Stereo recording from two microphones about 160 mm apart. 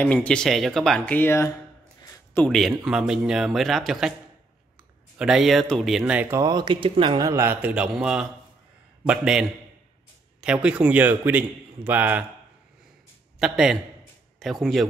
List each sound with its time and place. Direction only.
0.0 s speech: 10° left (ahead or behind)
5.1 s speech: 5° right (ahead or behind)
13.4 s speech: 5° right (ahead or behind)